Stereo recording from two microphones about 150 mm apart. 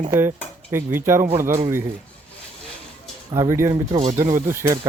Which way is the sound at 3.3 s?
20° right (ahead or behind).